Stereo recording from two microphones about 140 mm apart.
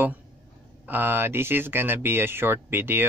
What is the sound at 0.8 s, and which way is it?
Speech, 15° right (ahead or behind).